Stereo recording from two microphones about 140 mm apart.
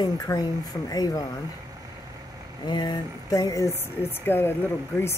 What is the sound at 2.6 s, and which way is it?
Speech, 30° left (ahead or behind).